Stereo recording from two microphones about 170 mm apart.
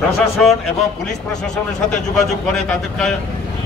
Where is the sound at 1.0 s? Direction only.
5° left (ahead or behind).